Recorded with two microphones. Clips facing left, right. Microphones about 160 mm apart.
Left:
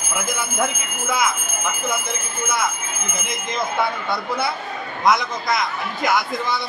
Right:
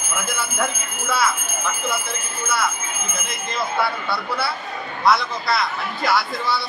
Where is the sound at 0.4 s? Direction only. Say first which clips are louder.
Left 1 dB; 15° left (ahead or behind).